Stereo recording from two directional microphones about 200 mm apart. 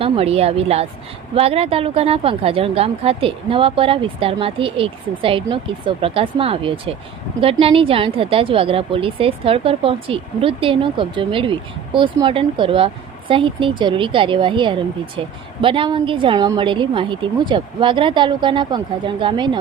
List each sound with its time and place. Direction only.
0.0 s speech: 30° right (ahead or behind)